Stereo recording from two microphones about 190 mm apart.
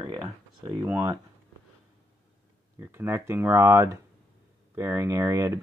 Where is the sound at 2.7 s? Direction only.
15° right (ahead or behind).